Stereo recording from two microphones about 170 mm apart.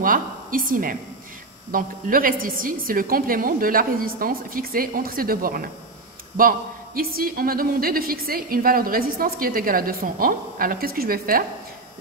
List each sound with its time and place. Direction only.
0.0 s a woman's voice: 55° right (ahead or behind)